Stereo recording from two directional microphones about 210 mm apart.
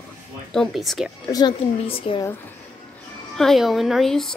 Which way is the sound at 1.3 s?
20° left (ahead or behind).